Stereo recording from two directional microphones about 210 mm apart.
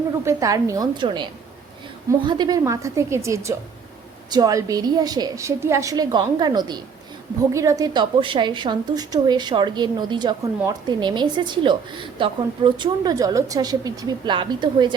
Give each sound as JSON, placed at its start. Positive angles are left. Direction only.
{"t": 0.3, "sound": "a woman's voice", "side_deg": -15}